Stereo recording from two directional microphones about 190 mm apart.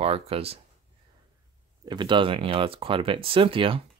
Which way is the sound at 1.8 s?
25° right (ahead or behind).